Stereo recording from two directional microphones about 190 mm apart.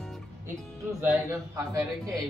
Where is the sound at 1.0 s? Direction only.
15° right (ahead or behind).